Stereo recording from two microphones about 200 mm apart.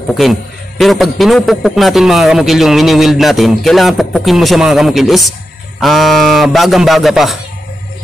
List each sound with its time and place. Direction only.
0.1 s a man's voice: centre (ahead or behind)